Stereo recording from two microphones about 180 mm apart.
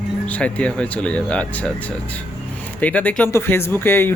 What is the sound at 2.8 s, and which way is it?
Speech, 10° left (ahead or behind).